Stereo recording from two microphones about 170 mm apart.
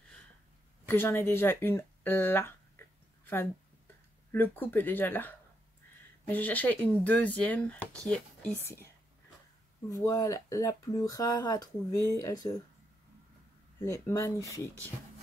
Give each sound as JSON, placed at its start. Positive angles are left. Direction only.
{"t": 0.8, "sound": "speech", "side_deg": 15}
{"t": 2.8, "sound": "a sound", "side_deg": 15}
{"t": 3.3, "sound": "speech", "side_deg": 10}
{"t": 6.3, "sound": "speech", "side_deg": 10}
{"t": 9.8, "sound": "speech", "side_deg": 20}
{"t": 13.7, "sound": "speech", "side_deg": 15}